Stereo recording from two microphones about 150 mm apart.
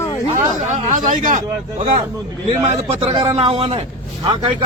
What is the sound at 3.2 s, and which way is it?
Speech, 40° right (ahead or behind).